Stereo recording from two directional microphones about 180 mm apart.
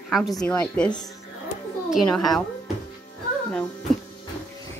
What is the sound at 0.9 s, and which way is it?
Speech, 20° left (ahead or behind).